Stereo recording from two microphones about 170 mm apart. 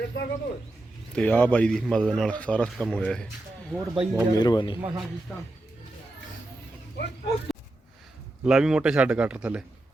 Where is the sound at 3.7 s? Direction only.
10° right (ahead or behind).